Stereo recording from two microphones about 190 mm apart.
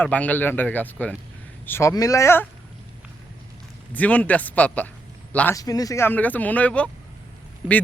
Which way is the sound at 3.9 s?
5° left (ahead or behind).